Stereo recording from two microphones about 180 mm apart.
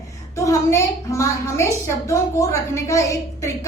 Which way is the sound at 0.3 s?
15° left (ahead or behind).